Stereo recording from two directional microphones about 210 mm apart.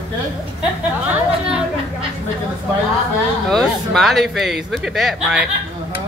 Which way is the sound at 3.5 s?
Centre (ahead or behind).